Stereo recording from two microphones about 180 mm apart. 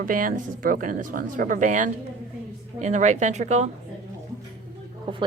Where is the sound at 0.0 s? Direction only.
50° right (ahead or behind).